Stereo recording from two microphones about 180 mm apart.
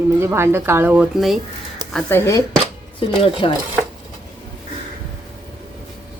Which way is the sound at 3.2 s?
30° left (ahead or behind).